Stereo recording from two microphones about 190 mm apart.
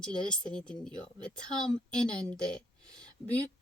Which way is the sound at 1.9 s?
5° left (ahead or behind).